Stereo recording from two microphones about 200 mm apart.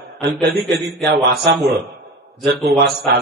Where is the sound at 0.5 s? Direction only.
Centre (ahead or behind).